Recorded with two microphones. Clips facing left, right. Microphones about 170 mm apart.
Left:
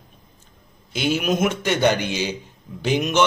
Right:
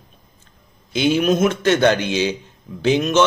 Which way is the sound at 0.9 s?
5° left (ahead or behind).